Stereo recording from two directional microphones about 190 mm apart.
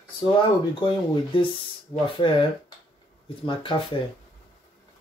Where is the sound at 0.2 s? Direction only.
25° left (ahead or behind).